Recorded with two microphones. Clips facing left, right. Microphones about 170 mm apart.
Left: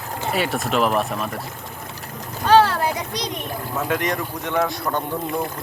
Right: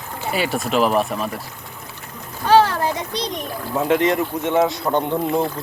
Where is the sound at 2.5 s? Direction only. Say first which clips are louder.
Right 1 dB; 15° right (ahead or behind).